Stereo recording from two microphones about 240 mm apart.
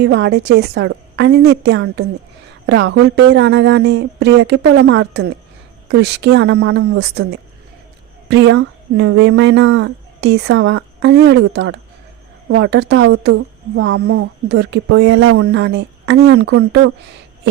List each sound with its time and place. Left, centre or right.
0.0 s speech: right